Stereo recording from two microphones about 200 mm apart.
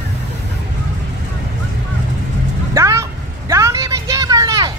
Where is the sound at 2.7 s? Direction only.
15° right (ahead or behind).